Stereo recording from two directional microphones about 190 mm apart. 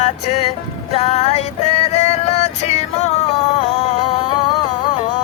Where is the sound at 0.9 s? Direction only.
35° left (ahead or behind).